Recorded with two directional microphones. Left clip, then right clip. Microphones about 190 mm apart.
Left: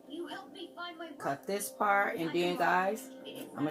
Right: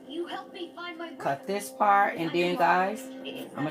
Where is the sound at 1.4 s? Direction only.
20° right (ahead or behind).